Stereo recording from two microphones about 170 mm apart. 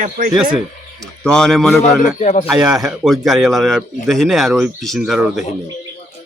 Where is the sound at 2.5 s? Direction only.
5° right (ahead or behind).